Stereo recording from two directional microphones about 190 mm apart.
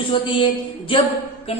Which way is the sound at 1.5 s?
30° left (ahead or behind).